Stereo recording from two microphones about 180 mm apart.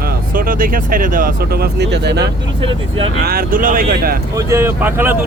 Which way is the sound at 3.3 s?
55° right (ahead or behind).